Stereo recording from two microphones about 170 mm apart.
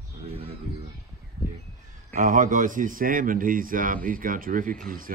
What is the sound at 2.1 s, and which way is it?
Speech, 50° right (ahead or behind).